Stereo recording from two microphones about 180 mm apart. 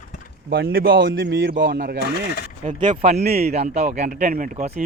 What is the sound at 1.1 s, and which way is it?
Speech, 75° right (ahead or behind).